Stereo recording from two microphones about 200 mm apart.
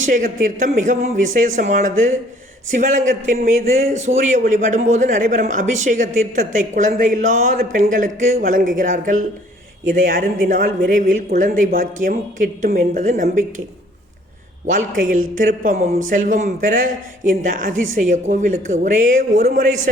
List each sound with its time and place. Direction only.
0.0 s a man's voice: 40° right (ahead or behind)
14.7 s a man's voice: 40° right (ahead or behind)